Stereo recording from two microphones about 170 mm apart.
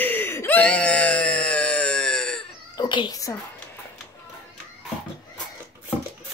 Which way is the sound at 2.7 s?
25° left (ahead or behind).